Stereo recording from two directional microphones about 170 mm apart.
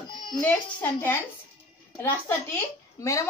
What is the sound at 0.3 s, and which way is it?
A woman's voice, 5° left (ahead or behind).